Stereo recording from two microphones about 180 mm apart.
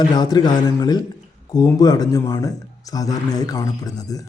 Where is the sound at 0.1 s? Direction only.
25° left (ahead or behind).